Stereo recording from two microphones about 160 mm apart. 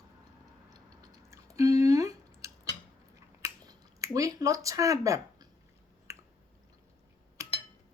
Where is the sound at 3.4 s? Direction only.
20° right (ahead or behind).